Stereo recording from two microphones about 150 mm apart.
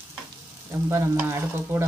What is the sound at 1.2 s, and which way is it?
Stir, 15° right (ahead or behind).